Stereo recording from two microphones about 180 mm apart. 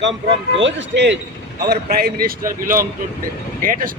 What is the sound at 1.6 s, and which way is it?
Speech, 60° right (ahead or behind).